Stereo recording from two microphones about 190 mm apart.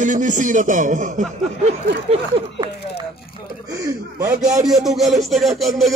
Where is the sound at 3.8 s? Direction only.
20° right (ahead or behind).